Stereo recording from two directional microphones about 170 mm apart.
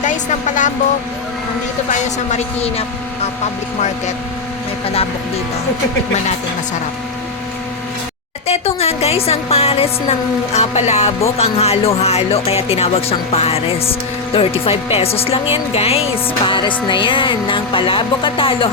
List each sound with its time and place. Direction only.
0.0 s speech: 45° left (ahead or behind)
1.9 s speech: 40° left (ahead or behind)
8.4 s speech: 35° left (ahead or behind)
16.5 s music: 30° left (ahead or behind)